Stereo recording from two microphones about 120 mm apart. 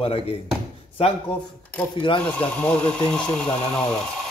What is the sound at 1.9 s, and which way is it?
Speech, 45° left (ahead or behind).